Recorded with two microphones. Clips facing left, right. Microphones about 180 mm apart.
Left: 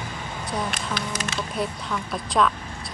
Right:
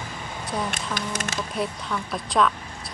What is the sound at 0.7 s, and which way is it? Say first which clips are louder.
Speech: even; 50° right (ahead or behind).